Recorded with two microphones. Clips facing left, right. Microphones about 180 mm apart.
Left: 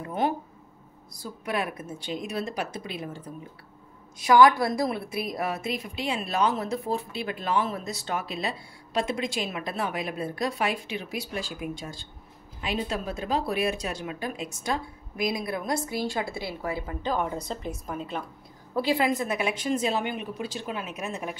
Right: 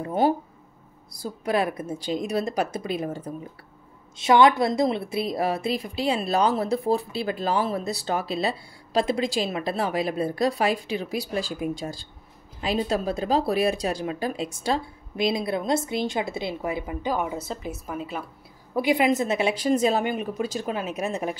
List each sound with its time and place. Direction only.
0.0 s a woman's voice: 30° right (ahead or behind)
4.2 s a woman's voice: 25° right (ahead or behind); by 18.2 s 5° right (ahead or behind)
18.8 s a woman's voice: 15° right (ahead or behind); by 21.4 s 35° right (ahead or behind)